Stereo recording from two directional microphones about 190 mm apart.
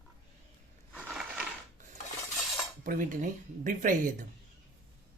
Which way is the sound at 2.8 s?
45° right (ahead or behind).